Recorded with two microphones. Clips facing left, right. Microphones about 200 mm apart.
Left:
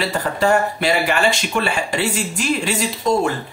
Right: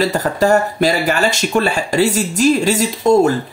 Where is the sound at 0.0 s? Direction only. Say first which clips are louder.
Right 4 dB; 40° right (ahead or behind).